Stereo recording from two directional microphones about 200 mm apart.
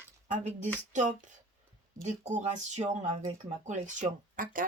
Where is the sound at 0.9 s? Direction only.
40° right (ahead or behind).